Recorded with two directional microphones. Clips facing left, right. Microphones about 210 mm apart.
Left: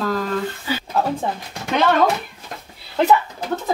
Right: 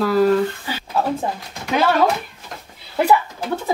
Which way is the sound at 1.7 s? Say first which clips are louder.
Even; 5° right (ahead or behind).